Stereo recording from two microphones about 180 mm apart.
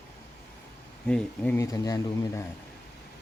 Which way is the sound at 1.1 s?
10° left (ahead or behind).